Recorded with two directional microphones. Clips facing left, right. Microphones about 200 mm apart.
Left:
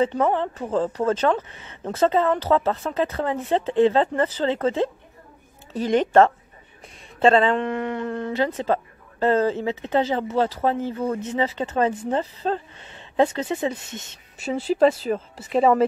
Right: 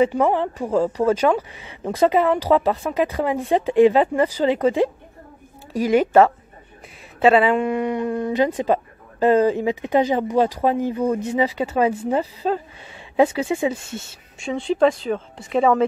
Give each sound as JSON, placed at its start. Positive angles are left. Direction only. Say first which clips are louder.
{"t": 0.0, "sound": "speech", "louder": "right 3 dB", "side_deg": -10}
{"t": 14.4, "sound": "speech", "louder": "even", "side_deg": 5}